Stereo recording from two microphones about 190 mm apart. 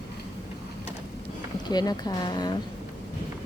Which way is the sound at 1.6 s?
20° left (ahead or behind).